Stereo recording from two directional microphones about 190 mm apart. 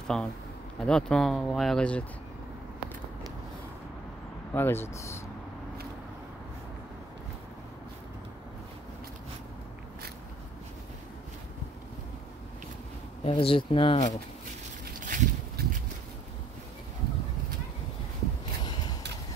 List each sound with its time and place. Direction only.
0.0 s speech: 5° left (ahead or behind)
4.6 s speech: 10° left (ahead or behind)
13.2 s speech: 30° left (ahead or behind)
15.0 s a sound: 45° right (ahead or behind)